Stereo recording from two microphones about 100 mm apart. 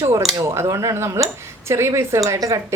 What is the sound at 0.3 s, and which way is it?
A woman's voice, 25° right (ahead or behind).